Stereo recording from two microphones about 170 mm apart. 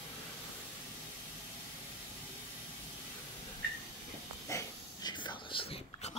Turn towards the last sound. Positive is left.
turn(degrees=35)  # may be behind; listen again after turning